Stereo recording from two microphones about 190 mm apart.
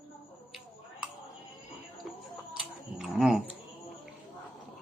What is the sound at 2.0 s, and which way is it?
Tick-tock, centre (ahead or behind).